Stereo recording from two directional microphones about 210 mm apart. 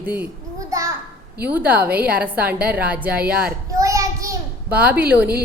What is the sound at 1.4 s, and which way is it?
A woman's voice, 5° right (ahead or behind).